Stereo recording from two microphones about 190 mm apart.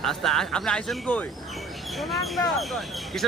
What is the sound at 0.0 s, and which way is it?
Speech, centre (ahead or behind).